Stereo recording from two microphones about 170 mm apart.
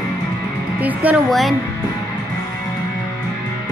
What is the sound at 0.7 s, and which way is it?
Speech, 10° right (ahead or behind).